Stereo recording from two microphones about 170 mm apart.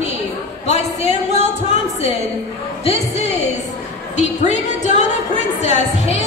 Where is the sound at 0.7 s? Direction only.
40° left (ahead or behind).